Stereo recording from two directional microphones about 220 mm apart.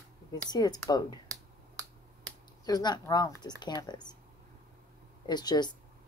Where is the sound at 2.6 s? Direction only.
20° left (ahead or behind).